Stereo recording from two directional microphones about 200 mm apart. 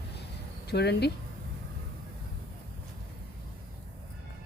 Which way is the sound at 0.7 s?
55° left (ahead or behind).